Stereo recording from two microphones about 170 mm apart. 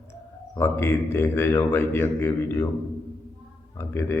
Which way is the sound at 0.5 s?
15° left (ahead or behind).